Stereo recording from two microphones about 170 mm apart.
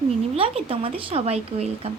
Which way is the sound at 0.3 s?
35° right (ahead or behind).